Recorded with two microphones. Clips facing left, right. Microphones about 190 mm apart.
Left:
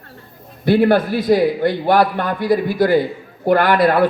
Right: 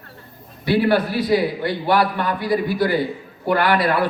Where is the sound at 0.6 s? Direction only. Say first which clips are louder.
Left 4 dB; 50° left (ahead or behind).